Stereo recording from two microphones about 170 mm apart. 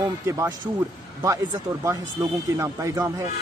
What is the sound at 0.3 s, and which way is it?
Speech, 15° right (ahead or behind).